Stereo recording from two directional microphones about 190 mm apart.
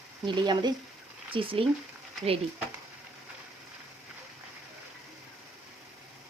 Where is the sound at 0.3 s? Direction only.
25° right (ahead or behind).